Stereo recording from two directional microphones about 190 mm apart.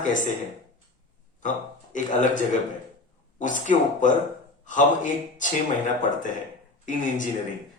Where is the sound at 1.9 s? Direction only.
40° left (ahead or behind).